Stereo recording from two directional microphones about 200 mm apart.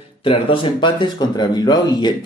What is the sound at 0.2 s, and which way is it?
Speech, 25° left (ahead or behind).